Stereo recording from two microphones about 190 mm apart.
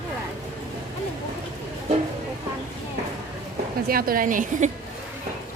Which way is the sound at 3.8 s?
50° right (ahead or behind).